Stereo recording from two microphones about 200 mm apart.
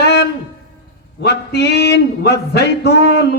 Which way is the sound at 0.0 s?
55° left (ahead or behind).